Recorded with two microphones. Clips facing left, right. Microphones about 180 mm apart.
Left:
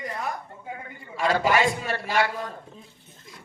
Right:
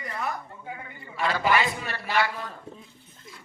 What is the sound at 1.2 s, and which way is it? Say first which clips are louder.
A man's voice: left 3 dB; 45° left (ahead or behind).